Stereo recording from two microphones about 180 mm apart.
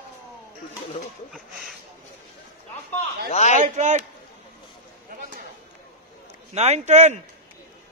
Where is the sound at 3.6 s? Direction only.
45° right (ahead or behind).